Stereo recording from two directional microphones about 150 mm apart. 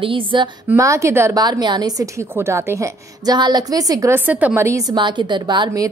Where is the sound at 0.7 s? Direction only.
20° right (ahead or behind).